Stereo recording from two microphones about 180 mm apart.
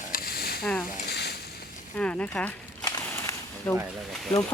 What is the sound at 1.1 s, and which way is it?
Boat, 65° left (ahead or behind).